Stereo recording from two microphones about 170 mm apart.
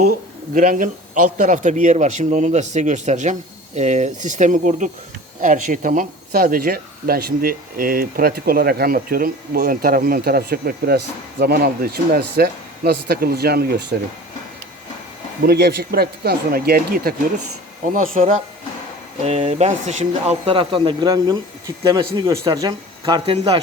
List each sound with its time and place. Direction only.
0.5 s speech: 50° right (ahead or behind); by 13.8 s 65° right (ahead or behind)
15.4 s speech: 70° right (ahead or behind)
19.2 s speech: 40° right (ahead or behind)